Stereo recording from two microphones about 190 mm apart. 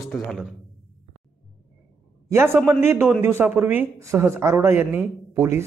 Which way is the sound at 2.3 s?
15° right (ahead or behind).